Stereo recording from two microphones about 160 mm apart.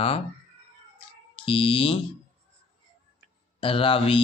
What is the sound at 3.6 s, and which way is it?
Speech, 35° left (ahead or behind).